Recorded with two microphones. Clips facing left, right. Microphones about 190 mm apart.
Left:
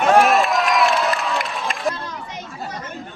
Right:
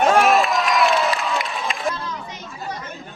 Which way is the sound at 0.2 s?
Centre (ahead or behind).